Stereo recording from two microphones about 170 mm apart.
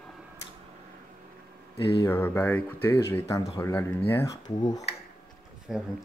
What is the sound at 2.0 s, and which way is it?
Speech, 10° left (ahead or behind).